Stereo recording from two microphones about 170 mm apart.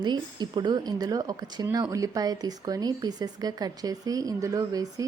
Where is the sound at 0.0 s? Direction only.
25° right (ahead or behind).